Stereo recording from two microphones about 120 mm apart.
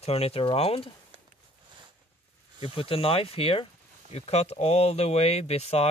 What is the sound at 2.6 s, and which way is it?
Speech, 50° left (ahead or behind).